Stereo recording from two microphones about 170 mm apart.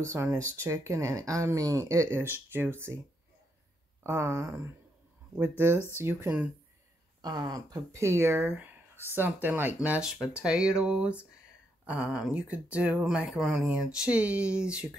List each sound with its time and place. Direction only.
0.0 s speech: 15° right (ahead or behind)
4.0 s speech: 15° right (ahead or behind)
5.9 s speech: 15° right (ahead or behind)
7.2 s speech: 25° right (ahead or behind); by 14.9 s 5° right (ahead or behind)